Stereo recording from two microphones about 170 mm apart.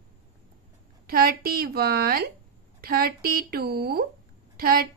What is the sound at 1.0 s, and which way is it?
Speech, 60° right (ahead or behind).